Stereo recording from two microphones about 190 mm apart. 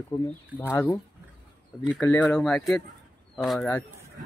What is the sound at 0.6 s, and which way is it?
Speech, 10° left (ahead or behind).